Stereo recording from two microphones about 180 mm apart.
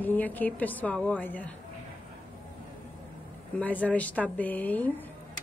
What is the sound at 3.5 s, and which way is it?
A woman's voice, 10° left (ahead or behind).